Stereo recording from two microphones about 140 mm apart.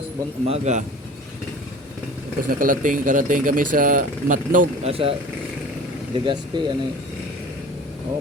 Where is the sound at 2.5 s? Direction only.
75° right (ahead or behind).